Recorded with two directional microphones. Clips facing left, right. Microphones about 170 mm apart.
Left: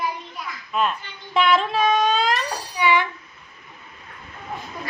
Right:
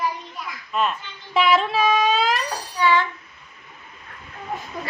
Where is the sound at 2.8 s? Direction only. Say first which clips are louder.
Right 1 dB; 15° left (ahead or behind).